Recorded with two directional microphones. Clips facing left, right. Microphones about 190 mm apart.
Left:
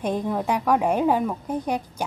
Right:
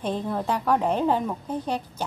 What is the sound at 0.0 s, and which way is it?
A woman's voice, 15° left (ahead or behind).